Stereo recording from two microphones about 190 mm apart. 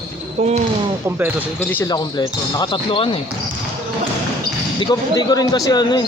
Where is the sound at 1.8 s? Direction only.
20° left (ahead or behind).